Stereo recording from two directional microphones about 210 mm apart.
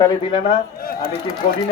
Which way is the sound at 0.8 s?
45° left (ahead or behind).